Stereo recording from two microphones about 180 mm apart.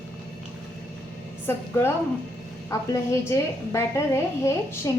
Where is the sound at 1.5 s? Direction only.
15° left (ahead or behind).